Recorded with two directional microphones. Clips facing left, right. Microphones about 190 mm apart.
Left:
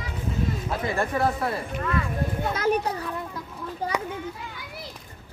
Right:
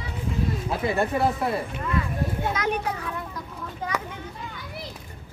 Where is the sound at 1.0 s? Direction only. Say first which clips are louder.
Even; 25° right (ahead or behind).